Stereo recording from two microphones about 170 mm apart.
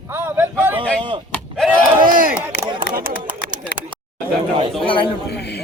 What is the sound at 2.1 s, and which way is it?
Speech, 55° right (ahead or behind).